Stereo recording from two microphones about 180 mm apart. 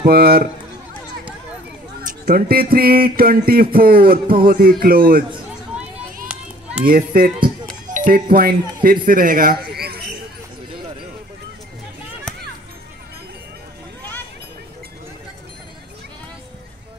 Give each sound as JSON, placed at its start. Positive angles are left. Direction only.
{"t": 0.0, "sound": "music", "side_deg": -60}
{"t": 2.0, "sound": "music", "side_deg": -50}
{"t": 6.8, "sound": "a child's voice", "side_deg": -50}